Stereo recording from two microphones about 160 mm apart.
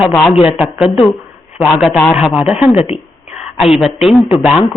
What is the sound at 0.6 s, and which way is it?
Speech, centre (ahead or behind).